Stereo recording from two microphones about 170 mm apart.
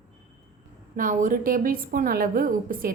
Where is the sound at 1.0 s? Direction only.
50° right (ahead or behind).